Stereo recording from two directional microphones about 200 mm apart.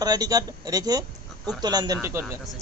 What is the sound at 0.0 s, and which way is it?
A man's voice, 20° right (ahead or behind).